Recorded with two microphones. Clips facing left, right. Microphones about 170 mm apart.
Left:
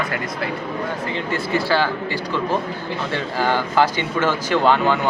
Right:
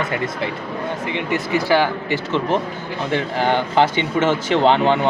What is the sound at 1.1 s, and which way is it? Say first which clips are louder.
A man's voice: right 2 dB; 20° right (ahead or behind).